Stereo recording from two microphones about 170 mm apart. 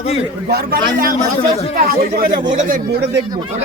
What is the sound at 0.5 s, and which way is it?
Speech, 60° right (ahead or behind).